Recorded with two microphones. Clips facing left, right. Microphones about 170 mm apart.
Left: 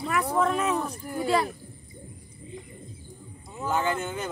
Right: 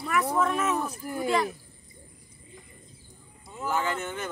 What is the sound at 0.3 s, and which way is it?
Speech, 5° right (ahead or behind).